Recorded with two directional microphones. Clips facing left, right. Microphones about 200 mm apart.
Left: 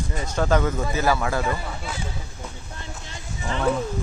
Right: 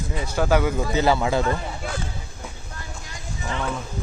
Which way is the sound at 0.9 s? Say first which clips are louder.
Right 4 dB; 20° right (ahead or behind).